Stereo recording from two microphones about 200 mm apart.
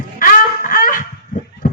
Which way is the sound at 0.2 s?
45° left (ahead or behind).